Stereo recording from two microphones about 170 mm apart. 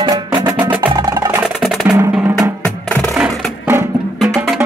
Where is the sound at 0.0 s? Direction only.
25° right (ahead or behind).